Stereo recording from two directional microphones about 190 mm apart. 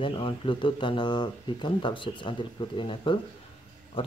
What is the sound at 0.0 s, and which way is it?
Speech, 25° left (ahead or behind).